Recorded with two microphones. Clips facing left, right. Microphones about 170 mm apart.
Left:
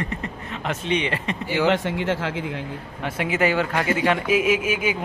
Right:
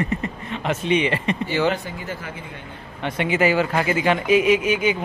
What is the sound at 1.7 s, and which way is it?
Speech, 90° left.